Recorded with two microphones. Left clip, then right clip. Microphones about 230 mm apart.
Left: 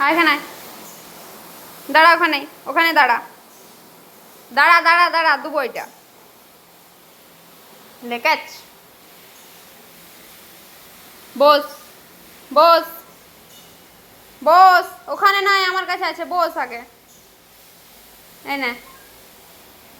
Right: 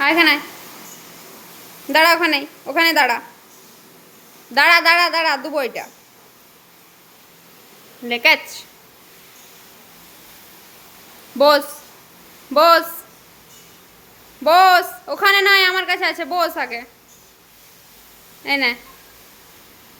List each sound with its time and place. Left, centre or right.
0.0 s speech: centre
1.9 s a woman's voice: centre
4.5 s a woman's voice: right
8.0 s a woman's voice: right
11.3 s a woman's voice: centre
14.4 s a woman's voice: centre
18.4 s a woman's voice: centre